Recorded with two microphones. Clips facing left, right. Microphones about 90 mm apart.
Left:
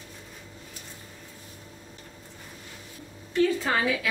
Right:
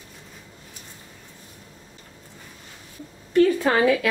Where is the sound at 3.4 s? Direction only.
60° right (ahead or behind).